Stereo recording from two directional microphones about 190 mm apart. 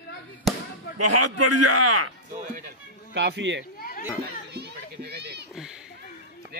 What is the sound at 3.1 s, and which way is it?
Speech, 65° right (ahead or behind).